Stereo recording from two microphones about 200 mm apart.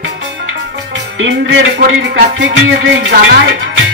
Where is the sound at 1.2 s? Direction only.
60° right (ahead or behind).